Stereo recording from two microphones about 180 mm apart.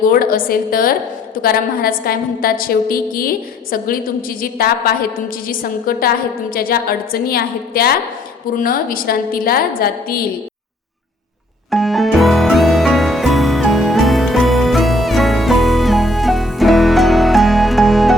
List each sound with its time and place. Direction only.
0.1 s a woman's voice: 55° left (ahead or behind)
11.7 s music: centre (ahead or behind)